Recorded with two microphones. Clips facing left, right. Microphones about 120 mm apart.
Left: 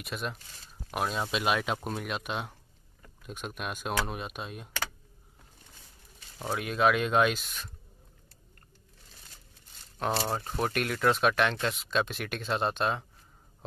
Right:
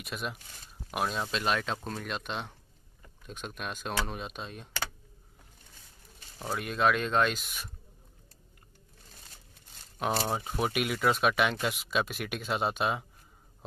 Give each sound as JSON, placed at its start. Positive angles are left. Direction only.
{"t": 0.0, "sound": "speech", "side_deg": 0}
{"t": 6.4, "sound": "speech", "side_deg": 0}
{"t": 9.9, "sound": "speech", "side_deg": -5}